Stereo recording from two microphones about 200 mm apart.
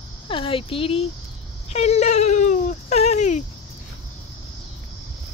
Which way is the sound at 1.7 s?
35° left (ahead or behind).